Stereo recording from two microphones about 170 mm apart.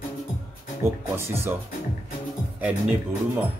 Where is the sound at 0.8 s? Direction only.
15° right (ahead or behind).